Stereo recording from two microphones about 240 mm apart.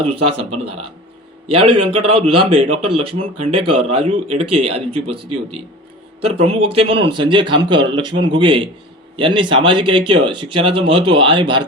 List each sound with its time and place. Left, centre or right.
0.0 s speech: right
6.7 s speech: right